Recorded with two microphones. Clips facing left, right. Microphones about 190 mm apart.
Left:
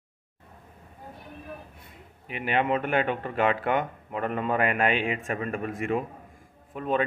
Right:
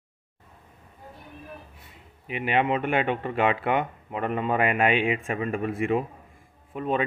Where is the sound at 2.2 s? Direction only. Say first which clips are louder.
Right 3 dB; 40° left (ahead or behind).